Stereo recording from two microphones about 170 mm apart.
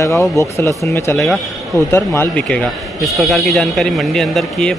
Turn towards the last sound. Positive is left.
turn(degrees=5)  # may be behind; listen again after turning